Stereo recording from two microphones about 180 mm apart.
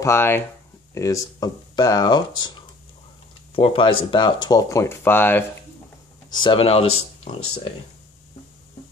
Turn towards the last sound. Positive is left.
turn(degrees=30)  # may be behind; listen again after turning